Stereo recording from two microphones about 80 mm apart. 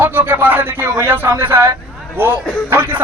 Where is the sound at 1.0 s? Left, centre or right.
Right.